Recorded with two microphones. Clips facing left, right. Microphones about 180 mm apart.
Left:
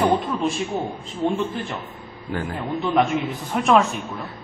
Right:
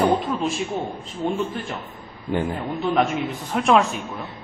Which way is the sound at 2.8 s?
Centre (ahead or behind).